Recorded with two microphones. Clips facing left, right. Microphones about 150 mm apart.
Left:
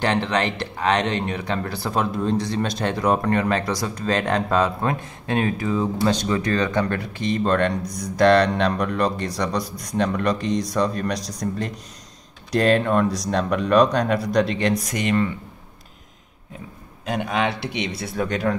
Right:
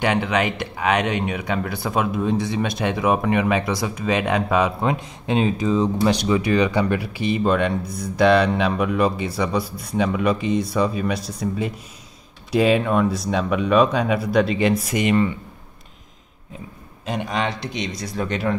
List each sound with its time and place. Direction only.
0.0 s speech: 10° right (ahead or behind)
17.1 s speech: centre (ahead or behind)
17.5 s speech: 65° left (ahead or behind)
17.7 s speech: 10° left (ahead or behind)